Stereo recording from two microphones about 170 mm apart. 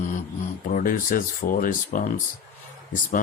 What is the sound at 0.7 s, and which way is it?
Speech, 55° left (ahead or behind).